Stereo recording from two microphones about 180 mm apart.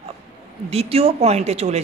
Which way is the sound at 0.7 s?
35° right (ahead or behind).